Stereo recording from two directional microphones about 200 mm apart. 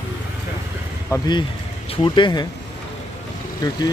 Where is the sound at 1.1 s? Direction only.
20° left (ahead or behind).